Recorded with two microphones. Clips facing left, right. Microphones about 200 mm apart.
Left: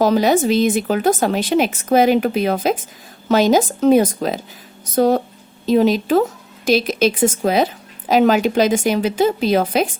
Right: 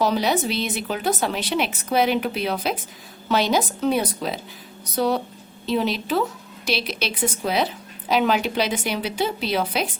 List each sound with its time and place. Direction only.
0.0 s speech: 45° left (ahead or behind)